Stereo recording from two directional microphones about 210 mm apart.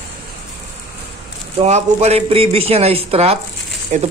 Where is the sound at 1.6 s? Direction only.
30° right (ahead or behind).